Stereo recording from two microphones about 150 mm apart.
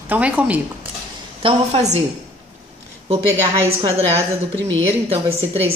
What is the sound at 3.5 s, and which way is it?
A woman's voice, 40° right (ahead or behind).